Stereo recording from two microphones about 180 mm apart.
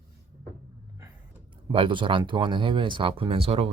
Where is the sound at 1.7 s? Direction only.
30° right (ahead or behind).